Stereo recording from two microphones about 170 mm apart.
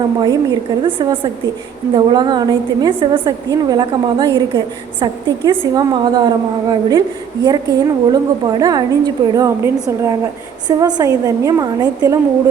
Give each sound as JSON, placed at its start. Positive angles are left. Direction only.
{"t": 0.2, "sound": "a woman's voice", "side_deg": -25}